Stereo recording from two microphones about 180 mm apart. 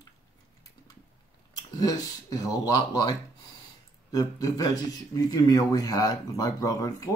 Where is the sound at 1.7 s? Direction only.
20° left (ahead or behind).